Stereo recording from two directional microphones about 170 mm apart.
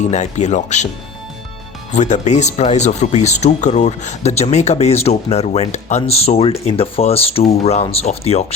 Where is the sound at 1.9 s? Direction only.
45° left (ahead or behind).